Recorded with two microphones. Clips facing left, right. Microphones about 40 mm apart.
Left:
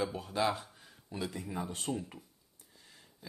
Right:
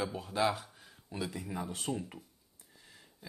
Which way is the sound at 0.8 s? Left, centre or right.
Centre.